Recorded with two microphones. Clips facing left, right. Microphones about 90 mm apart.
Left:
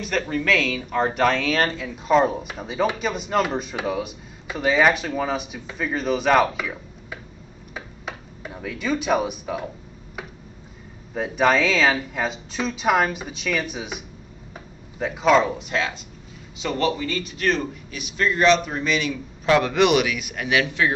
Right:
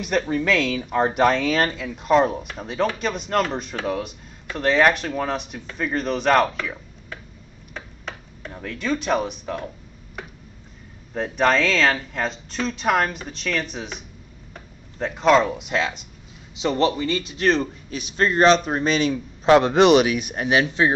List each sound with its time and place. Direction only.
0.0 s speech: 15° right (ahead or behind); by 7.2 s 10° left (ahead or behind)
7.7 s a sound: 10° left (ahead or behind)
11.1 s speech: 5° left (ahead or behind)
16.6 s a man's voice: 20° right (ahead or behind)